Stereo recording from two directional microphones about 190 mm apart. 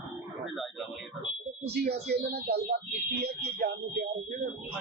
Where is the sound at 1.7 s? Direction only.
60° right (ahead or behind).